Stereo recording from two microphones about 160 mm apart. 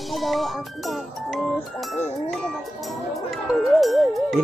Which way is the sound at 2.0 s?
5° left (ahead or behind).